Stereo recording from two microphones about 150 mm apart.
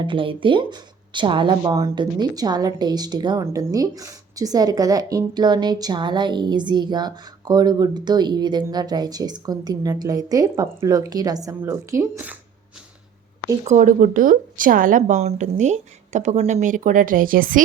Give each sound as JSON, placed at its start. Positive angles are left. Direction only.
{"t": 0.0, "sound": "a woman's voice", "side_deg": -35}
{"t": 13.7, "sound": "a woman's voice", "side_deg": -55}